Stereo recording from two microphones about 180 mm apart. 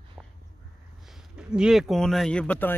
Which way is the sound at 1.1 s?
5° right (ahead or behind).